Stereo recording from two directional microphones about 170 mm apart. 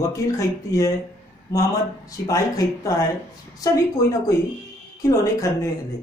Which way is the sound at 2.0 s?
20° left (ahead or behind).